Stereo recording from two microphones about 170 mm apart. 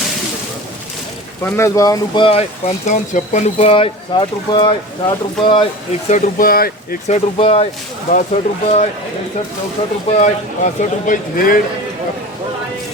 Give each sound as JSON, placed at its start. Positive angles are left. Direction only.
{"t": 1.5, "sound": "speech", "side_deg": 15}
{"t": 6.1, "sound": "speech", "side_deg": 45}
{"t": 7.1, "sound": "speech", "side_deg": 35}
{"t": 10.1, "sound": "speech", "side_deg": 40}
{"t": 10.8, "sound": "speech", "side_deg": 50}